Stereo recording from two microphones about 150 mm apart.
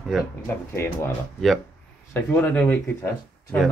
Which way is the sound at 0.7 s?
15° left (ahead or behind).